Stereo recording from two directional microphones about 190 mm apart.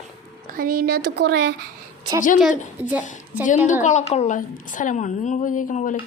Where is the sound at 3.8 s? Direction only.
35° left (ahead or behind).